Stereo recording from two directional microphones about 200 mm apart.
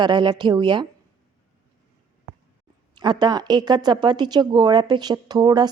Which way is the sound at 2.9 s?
20° right (ahead or behind).